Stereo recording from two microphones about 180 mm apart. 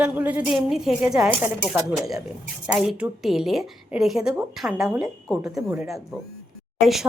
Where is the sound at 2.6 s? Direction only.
5° right (ahead or behind).